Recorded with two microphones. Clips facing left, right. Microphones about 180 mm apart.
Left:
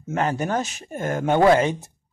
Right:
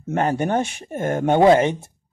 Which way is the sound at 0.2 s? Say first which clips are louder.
Right 3 dB; 40° right (ahead or behind).